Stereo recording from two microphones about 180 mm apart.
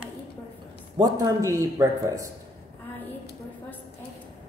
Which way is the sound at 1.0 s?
20° right (ahead or behind).